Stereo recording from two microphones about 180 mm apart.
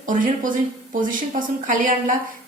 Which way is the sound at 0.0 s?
45° right (ahead or behind).